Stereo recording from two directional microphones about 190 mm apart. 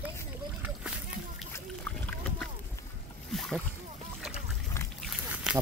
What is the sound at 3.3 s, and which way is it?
Boat, centre (ahead or behind).